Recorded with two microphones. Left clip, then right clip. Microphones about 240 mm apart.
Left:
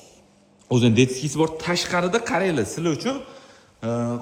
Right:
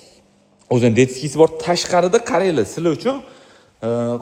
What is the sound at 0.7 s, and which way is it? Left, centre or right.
Speech, left.